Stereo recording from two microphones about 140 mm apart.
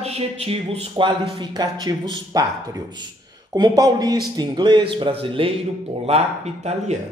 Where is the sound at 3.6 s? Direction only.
30° right (ahead or behind).